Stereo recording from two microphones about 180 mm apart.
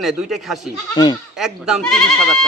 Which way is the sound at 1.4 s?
Centre (ahead or behind).